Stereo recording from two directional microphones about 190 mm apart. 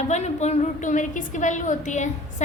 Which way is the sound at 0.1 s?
35° left (ahead or behind).